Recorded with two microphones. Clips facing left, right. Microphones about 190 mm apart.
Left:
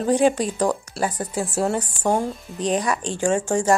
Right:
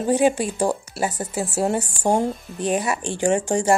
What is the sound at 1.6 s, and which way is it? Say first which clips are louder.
Speech: right 1 dB; 25° right (ahead or behind).